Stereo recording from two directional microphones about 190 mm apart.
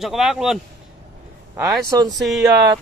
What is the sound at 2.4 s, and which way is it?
Speech, 20° right (ahead or behind).